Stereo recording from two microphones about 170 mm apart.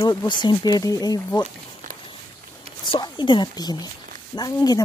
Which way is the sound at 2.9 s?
25° left (ahead or behind).